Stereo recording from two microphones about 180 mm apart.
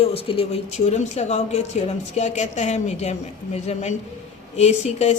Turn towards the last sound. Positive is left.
turn(degrees=40)  # may be behind; listen again after turning